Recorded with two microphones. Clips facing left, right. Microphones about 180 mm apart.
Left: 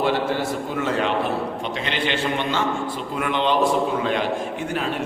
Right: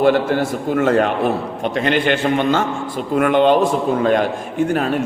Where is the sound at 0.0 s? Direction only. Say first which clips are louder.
Right 7 dB; 50° right (ahead or behind).